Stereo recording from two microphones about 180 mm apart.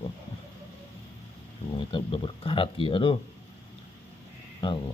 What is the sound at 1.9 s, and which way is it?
Speech, 25° left (ahead or behind).